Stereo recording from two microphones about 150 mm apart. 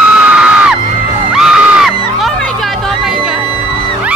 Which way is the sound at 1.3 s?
5° right (ahead or behind).